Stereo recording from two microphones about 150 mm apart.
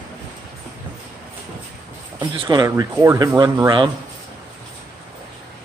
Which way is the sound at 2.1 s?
30° right (ahead or behind).